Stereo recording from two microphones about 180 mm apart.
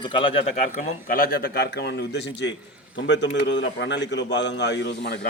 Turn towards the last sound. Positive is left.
turn(degrees=75)  # may be behind; listen again after turning